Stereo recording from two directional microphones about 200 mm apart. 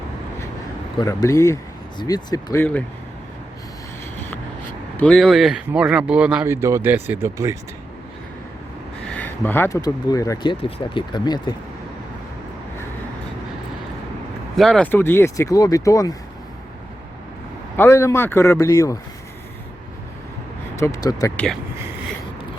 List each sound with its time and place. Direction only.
0.9 s speech: 15° left (ahead or behind)
4.9 s speech: 5° left (ahead or behind); by 7.5 s 15° right (ahead or behind)
9.0 s speech: 10° left (ahead or behind)
14.5 s speech: centre (ahead or behind); by 16.1 s 15° left (ahead or behind)
17.7 s speech: 15° left (ahead or behind)
20.7 s speech: 15° left (ahead or behind)
21.3 s speech: 5° left (ahead or behind)